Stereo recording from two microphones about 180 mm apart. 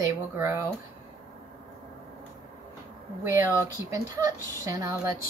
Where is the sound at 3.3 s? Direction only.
15° right (ahead or behind).